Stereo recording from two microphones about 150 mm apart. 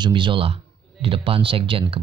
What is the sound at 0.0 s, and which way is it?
Speech, 35° right (ahead or behind).